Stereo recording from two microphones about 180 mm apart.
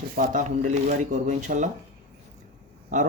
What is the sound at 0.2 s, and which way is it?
Speech, 45° right (ahead or behind).